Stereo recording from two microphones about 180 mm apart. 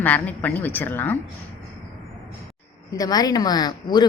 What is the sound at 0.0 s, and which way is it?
Speech, 10° left (ahead or behind).